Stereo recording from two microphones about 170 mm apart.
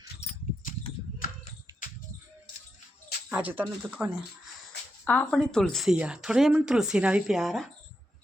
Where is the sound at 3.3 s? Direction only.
10° right (ahead or behind).